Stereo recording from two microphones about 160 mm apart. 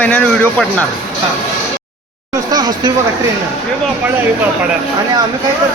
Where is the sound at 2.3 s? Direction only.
25° right (ahead or behind).